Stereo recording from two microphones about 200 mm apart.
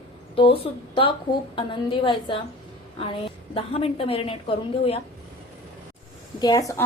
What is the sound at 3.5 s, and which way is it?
A woman's voice, 30° left (ahead or behind).